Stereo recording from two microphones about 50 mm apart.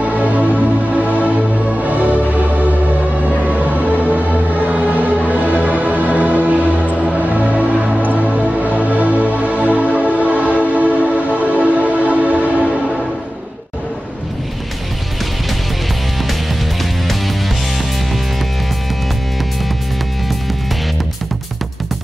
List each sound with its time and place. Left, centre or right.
0.2 s music: right